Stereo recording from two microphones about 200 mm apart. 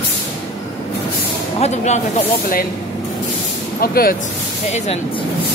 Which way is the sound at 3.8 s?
50° left (ahead or behind).